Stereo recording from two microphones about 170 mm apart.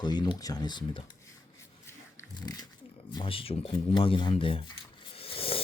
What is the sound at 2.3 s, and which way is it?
Speech, 25° left (ahead or behind).